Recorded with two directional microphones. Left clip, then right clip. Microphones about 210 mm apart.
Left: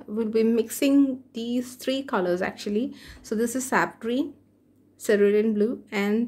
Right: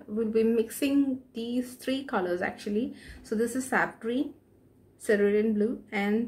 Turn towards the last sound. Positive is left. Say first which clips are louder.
# left 3 dB
turn(degrees=45)  # may be behind; listen again after turning